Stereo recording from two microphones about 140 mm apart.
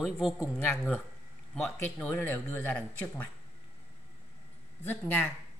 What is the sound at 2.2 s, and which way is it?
Speech, 15° left (ahead or behind).